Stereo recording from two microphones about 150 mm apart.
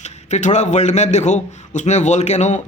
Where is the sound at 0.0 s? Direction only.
50° left (ahead or behind).